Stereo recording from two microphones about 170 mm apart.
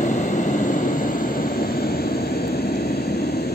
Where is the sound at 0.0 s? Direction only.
45° left (ahead or behind).